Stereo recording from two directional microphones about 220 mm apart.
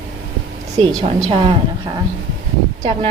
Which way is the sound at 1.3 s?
25° right (ahead or behind).